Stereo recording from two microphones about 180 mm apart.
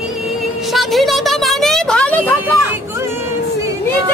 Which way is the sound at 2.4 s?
15° right (ahead or behind).